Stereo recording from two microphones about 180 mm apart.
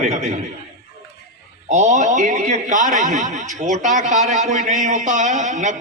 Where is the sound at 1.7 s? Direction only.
40° right (ahead or behind).